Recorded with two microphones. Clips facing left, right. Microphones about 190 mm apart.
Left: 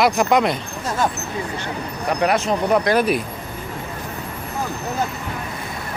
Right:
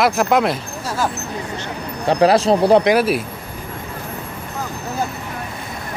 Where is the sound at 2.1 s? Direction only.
30° right (ahead or behind).